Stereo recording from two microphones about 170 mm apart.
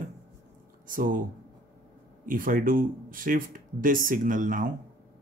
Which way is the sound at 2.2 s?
50° right (ahead or behind).